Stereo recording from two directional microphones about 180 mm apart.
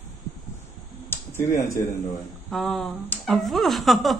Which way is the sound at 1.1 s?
15° left (ahead or behind).